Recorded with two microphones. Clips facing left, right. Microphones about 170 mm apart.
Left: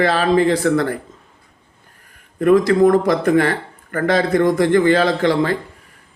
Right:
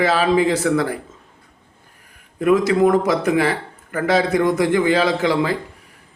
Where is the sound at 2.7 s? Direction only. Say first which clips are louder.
Left 2 dB; 5° right (ahead or behind).